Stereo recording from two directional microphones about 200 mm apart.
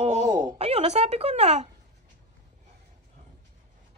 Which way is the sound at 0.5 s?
30° right (ahead or behind).